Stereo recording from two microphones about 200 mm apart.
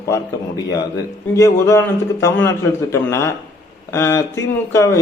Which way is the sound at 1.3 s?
15° left (ahead or behind).